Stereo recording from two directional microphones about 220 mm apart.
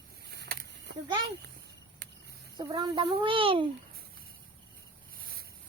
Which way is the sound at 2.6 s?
20° right (ahead or behind).